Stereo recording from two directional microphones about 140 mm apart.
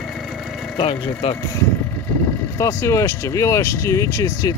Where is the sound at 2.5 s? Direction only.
20° left (ahead or behind).